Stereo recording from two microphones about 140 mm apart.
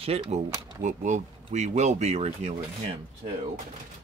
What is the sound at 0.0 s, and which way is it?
Speech, 45° right (ahead or behind).